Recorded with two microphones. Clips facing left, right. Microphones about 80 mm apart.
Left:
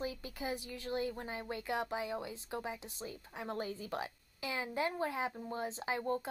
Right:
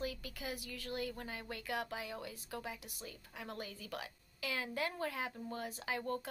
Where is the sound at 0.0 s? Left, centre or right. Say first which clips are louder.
Left 3 dB; left.